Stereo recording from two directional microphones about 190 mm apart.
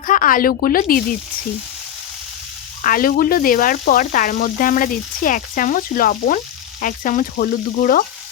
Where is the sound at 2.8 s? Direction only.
45° left (ahead or behind).